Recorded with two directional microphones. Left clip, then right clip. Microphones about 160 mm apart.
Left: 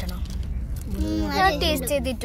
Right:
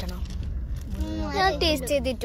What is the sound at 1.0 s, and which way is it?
Speech, 35° left (ahead or behind).